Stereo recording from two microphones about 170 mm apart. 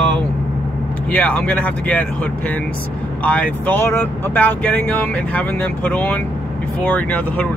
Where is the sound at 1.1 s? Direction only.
10° left (ahead or behind).